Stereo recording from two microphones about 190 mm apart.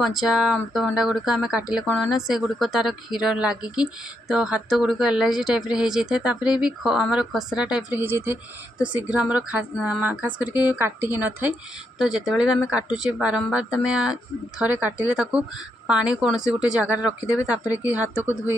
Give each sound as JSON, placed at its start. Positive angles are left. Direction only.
{"t": 0.0, "sound": "a woman's voice", "side_deg": 0}
{"t": 10.5, "sound": "a woman's voice", "side_deg": 20}
{"t": 10.8, "sound": "a woman's voice", "side_deg": -10}